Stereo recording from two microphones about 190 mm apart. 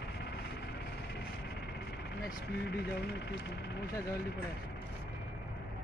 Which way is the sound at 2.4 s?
65° left (ahead or behind).